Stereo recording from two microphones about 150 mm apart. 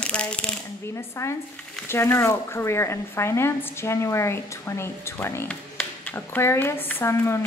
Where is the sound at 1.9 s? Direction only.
15° left (ahead or behind).